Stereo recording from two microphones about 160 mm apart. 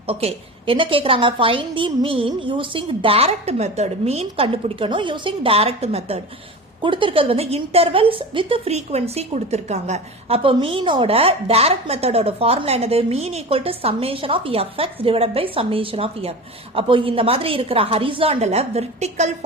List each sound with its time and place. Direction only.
0.1 s a woman's voice: 35° right (ahead or behind)